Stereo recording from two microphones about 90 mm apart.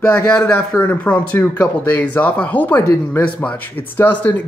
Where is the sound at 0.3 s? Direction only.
10° left (ahead or behind).